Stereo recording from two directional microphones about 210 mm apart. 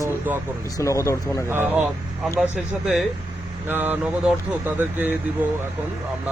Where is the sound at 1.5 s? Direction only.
10° right (ahead or behind).